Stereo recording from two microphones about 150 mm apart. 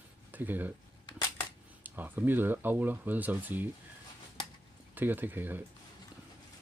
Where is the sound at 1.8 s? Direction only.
10° right (ahead or behind).